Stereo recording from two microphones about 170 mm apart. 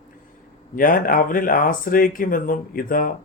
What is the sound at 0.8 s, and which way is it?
Speech, 55° left (ahead or behind).